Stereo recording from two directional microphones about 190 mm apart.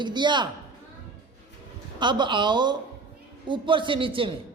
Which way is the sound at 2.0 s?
25° right (ahead or behind).